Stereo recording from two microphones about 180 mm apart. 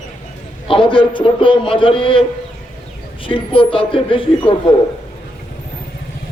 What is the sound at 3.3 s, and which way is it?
A man's voice, 30° left (ahead or behind).